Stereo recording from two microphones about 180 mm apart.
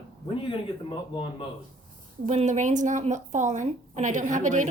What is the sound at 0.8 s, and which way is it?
Speech, 30° left (ahead or behind).